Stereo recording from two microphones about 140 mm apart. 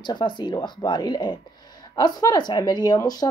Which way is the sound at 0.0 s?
35° left (ahead or behind).